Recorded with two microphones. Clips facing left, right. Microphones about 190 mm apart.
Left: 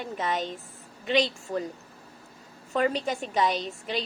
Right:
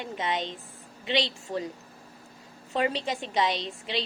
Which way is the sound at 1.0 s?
40° left (ahead or behind).